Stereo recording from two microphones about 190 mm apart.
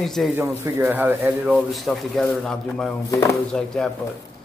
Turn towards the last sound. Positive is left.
turn(degrees=5)  # may be behind; listen again after turning